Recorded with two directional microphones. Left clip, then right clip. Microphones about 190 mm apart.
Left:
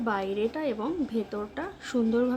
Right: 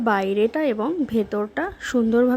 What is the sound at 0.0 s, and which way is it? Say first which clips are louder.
Speech: right 8 dB; 35° right (ahead or behind).